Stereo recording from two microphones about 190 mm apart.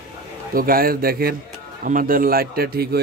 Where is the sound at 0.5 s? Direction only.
50° right (ahead or behind).